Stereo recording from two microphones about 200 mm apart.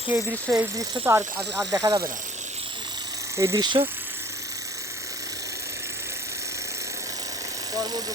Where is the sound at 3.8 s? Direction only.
10° right (ahead or behind).